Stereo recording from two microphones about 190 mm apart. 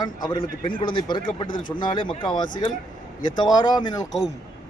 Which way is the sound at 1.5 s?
45° left (ahead or behind).